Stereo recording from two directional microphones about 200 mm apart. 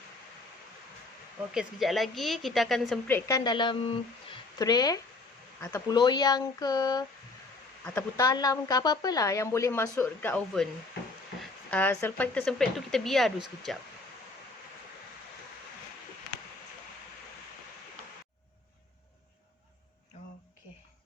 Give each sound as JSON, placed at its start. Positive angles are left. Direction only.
{"t": 1.5, "sound": "speech", "side_deg": 0}
{"t": 4.3, "sound": "a sound", "side_deg": 20}
{"t": 5.5, "sound": "a woman's voice", "side_deg": 15}